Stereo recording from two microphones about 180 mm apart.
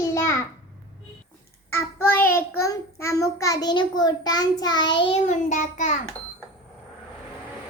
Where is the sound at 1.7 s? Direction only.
10° left (ahead or behind); by 5.2 s 30° left (ahead or behind).